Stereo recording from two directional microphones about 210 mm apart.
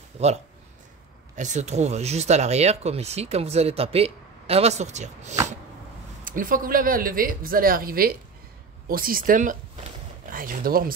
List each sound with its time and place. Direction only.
0.2 s speech: 30° right (ahead or behind)